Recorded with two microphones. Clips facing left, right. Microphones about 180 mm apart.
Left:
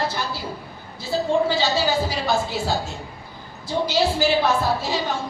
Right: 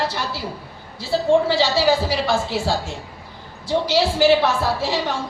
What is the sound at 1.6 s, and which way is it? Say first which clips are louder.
Speech: right 4 dB; 90° right.